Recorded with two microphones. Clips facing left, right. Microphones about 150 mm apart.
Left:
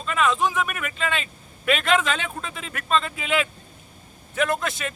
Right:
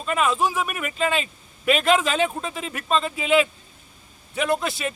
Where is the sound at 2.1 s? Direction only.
35° right (ahead or behind).